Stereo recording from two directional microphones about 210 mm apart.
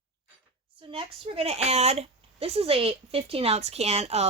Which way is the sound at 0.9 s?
25° right (ahead or behind).